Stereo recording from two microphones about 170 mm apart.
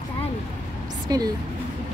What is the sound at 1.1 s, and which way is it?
Speech, 20° right (ahead or behind).